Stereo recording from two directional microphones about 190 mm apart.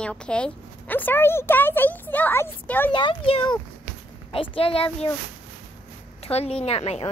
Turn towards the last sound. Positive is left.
turn(degrees=30)  # may be behind; listen again after turning